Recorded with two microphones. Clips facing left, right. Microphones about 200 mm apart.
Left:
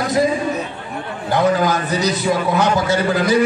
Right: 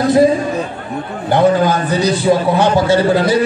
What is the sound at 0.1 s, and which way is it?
A man's voice, 30° right (ahead or behind).